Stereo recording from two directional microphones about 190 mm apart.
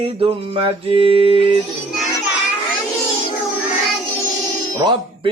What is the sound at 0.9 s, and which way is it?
Mantra, 30° right (ahead or behind).